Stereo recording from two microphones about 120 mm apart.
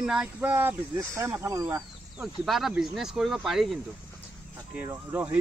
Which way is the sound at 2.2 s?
Centre (ahead or behind).